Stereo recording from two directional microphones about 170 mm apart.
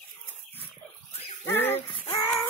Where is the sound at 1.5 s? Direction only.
15° left (ahead or behind).